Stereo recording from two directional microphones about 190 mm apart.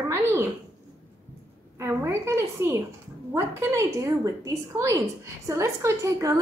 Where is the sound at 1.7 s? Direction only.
15° right (ahead or behind).